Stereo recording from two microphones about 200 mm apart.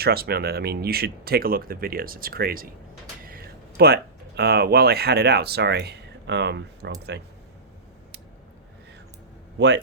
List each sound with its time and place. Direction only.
0.0 s speech: 50° right (ahead or behind)
9.6 s speech: 60° right (ahead or behind)